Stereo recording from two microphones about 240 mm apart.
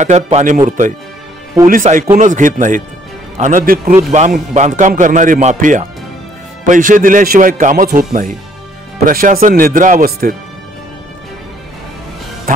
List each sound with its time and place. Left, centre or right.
0.0 s a man's voice: right
12.5 s speech: right